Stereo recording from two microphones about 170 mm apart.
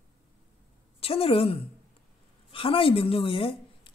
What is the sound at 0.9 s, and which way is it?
A woman's voice, 35° left (ahead or behind).